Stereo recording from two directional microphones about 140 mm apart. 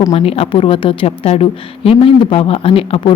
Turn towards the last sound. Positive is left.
turn(degrees=40)  # may be behind; listen again after turning